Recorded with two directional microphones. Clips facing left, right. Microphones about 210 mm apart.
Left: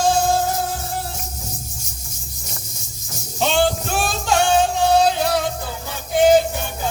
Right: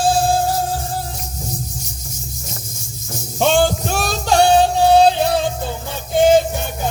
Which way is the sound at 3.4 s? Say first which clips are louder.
Right 3 dB; 45° right (ahead or behind).